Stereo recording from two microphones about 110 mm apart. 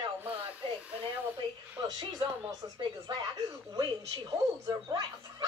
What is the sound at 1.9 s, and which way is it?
Speech, 40° right (ahead or behind).